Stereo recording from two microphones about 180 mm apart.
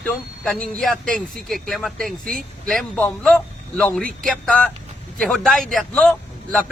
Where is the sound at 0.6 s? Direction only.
5° left (ahead or behind).